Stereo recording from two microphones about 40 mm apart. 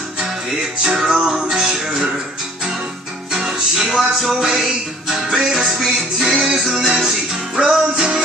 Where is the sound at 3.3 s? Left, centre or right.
Centre.